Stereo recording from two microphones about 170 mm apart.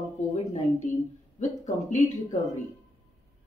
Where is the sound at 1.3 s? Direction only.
45° left (ahead or behind).